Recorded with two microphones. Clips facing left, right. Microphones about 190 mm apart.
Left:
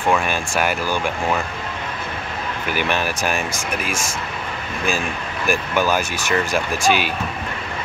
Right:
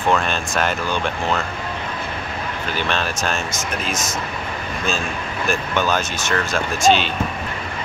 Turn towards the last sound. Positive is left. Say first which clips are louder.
# right 2 dB
turn(degrees=10)  # may be behind; listen again after turning